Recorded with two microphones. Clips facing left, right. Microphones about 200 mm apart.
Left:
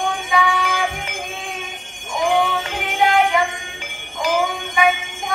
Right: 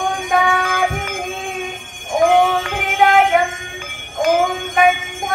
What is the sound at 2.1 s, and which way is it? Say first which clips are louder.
Music: right 5 dB; 50° right (ahead or behind).